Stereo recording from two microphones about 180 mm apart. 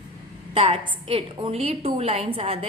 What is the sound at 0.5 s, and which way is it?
A woman's voice, 30° right (ahead or behind).